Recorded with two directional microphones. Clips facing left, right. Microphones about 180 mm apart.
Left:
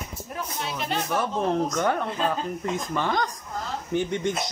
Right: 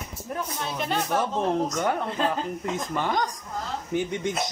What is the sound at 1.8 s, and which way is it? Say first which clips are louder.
Speech: left 1 dB; 15° right (ahead or behind).